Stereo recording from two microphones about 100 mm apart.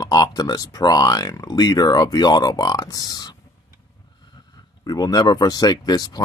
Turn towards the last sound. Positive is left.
turn(degrees=40)  # may be behind; listen again after turning